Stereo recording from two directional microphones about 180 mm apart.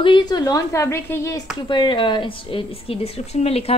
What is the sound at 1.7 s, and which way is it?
A woman's voice, 25° left (ahead or behind).